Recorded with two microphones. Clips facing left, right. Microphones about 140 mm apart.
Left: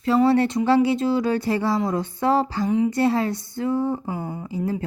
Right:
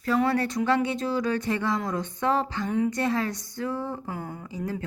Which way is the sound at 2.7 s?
10° left (ahead or behind).